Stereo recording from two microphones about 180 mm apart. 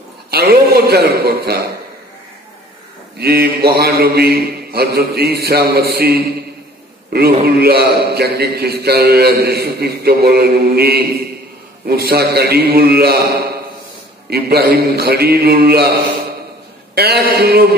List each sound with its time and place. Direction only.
0.3 s a man's voice: 60° right (ahead or behind)
3.2 s a man's voice: 60° right (ahead or behind)